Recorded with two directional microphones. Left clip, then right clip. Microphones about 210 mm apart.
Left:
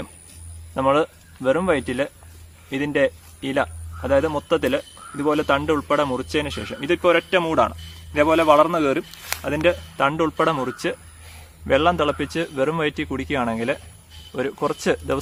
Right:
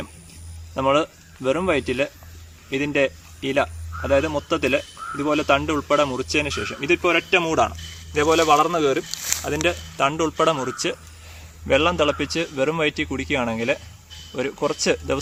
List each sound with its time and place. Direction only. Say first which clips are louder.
0.7 s a man's voice: left 1 dB; 20° left (ahead or behind)
8.1 s speech: left 1 dB; 40° left (ahead or behind)
9.6 s a man's voice: left 3 dB; 30° left (ahead or behind)